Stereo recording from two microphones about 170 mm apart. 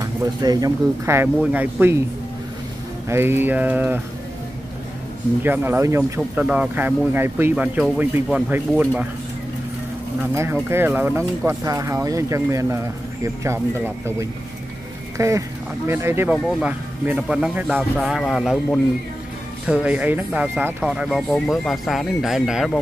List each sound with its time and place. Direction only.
0.0 s speech: 20° right (ahead or behind)
3.1 s speech: 15° right (ahead or behind)
5.4 s speech: 10° right (ahead or behind)
10.3 s speech: 15° right (ahead or behind)
15.1 s speech: 20° right (ahead or behind); by 22.7 s 5° right (ahead or behind)